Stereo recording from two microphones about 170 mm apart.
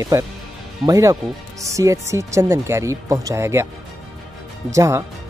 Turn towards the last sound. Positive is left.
turn(degrees=-20)  # may be behind; listen again after turning